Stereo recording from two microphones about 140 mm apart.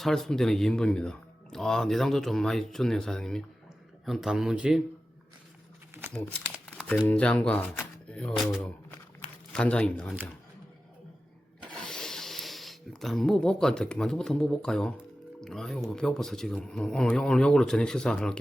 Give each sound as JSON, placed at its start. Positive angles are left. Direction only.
{"t": 0.0, "sound": "speech", "side_deg": 5}
{"t": 5.9, "sound": "crumpling", "side_deg": -20}
{"t": 6.7, "sound": "crumpling", "side_deg": 5}
{"t": 7.1, "sound": "speech", "side_deg": 10}
{"t": 9.5, "sound": "speech", "side_deg": 5}
{"t": 11.7, "sound": "a sound", "side_deg": 5}
{"t": 15.4, "sound": "speech", "side_deg": 5}